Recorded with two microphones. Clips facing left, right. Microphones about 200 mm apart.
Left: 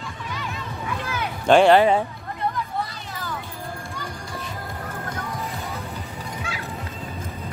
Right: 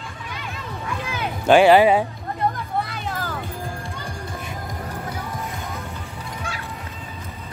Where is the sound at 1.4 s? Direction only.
5° right (ahead or behind).